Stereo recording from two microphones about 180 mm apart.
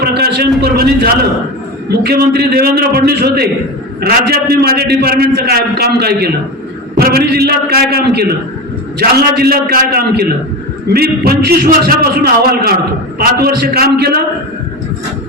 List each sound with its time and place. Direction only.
0.0 s a man's voice: 65° right (ahead or behind)